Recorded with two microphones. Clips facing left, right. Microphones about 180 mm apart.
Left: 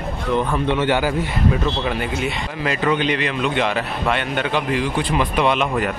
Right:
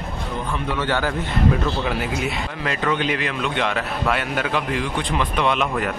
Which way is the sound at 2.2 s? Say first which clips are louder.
Left 2 dB; 5° left (ahead or behind).